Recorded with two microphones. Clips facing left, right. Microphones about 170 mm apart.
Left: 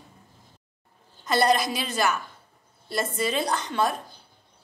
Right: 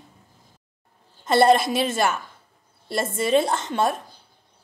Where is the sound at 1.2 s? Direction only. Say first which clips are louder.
Right 5 dB; 25° right (ahead or behind).